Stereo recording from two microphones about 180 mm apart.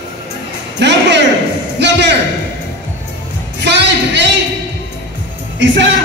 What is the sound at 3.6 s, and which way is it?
Music, 75° right (ahead or behind).